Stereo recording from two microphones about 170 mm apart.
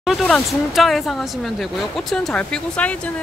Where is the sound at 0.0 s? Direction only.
Centre (ahead or behind).